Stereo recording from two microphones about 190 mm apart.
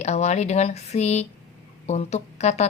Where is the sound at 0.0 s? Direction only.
35° left (ahead or behind).